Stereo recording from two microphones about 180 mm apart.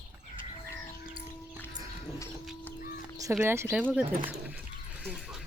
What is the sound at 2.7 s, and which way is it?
Chicken, 50° left (ahead or behind).